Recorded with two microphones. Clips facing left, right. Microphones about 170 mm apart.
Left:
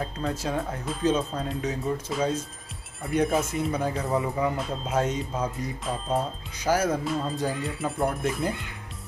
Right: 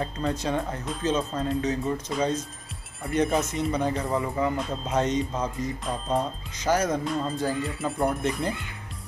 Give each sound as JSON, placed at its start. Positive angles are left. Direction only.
{"t": 0.0, "sound": "speech", "side_deg": 5}